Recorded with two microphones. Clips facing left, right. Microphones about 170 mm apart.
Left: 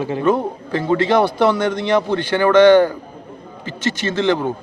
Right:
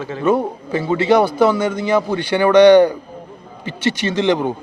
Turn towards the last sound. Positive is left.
turn(degrees=-15)  # may be behind; listen again after turning